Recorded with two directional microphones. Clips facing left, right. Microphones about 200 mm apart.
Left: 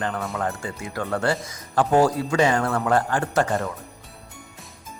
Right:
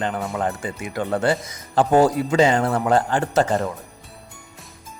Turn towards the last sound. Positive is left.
turn(degrees=-25)  # may be behind; listen again after turning